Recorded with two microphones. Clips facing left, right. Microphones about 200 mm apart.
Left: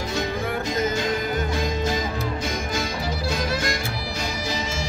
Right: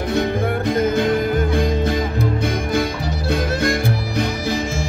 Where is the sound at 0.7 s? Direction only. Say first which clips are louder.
Right 8 dB; 55° right (ahead or behind).